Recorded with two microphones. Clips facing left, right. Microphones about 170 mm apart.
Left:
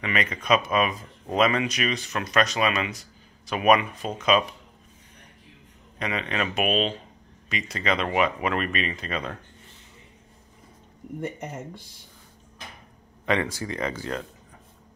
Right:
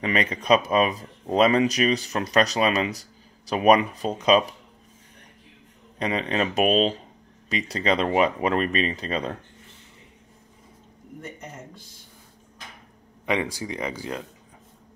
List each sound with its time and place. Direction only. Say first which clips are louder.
0.0 s speech: right 3 dB; 35° right (ahead or behind)
5.9 s speech: right 4 dB; 35° right (ahead or behind)
13.2 s speech: even; 15° right (ahead or behind)